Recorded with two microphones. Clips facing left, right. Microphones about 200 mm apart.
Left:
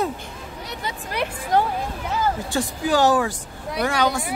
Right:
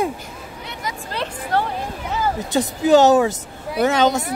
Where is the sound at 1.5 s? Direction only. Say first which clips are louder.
Left 1 dB; 15° left (ahead or behind).